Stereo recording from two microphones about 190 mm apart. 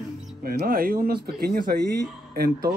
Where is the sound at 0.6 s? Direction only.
50° right (ahead or behind).